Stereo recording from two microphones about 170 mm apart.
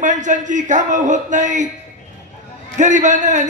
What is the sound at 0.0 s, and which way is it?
A man's voice, 45° right (ahead or behind).